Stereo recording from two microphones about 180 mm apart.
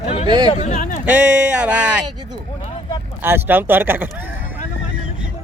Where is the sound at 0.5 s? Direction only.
35° left (ahead or behind).